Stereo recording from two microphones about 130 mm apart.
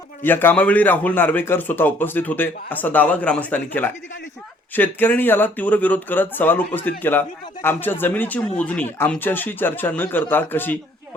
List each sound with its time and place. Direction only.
0.2 s speech: 15° left (ahead or behind)